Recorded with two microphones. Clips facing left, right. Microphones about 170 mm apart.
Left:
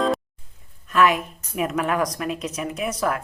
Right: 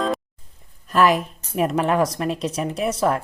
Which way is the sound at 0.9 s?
35° right (ahead or behind).